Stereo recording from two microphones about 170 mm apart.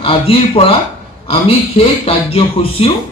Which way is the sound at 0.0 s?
35° left (ahead or behind).